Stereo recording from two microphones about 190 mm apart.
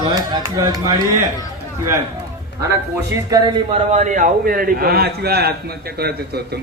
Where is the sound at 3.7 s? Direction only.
40° right (ahead or behind).